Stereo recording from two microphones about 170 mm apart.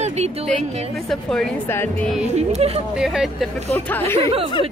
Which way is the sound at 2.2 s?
40° right (ahead or behind).